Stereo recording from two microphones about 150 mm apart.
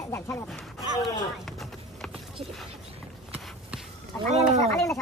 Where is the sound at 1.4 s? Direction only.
Centre (ahead or behind).